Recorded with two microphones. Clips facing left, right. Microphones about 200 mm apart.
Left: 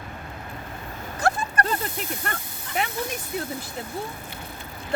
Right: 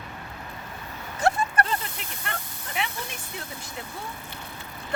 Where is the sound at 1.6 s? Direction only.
40° left (ahead or behind).